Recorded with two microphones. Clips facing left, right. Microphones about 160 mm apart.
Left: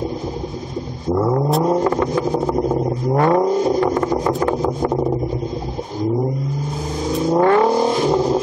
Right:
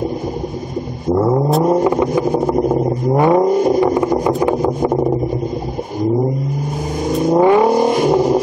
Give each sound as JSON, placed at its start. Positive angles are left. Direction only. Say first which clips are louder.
{"t": 1.0, "sound": "vehicle", "louder": "right 3 dB", "side_deg": -15}
{"t": 7.2, "sound": "vehicle", "louder": "right 3 dB", "side_deg": -10}